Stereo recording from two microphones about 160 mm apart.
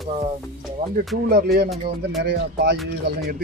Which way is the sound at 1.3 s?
75° right (ahead or behind).